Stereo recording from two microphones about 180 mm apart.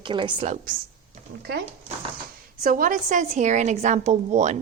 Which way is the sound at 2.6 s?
50° right (ahead or behind).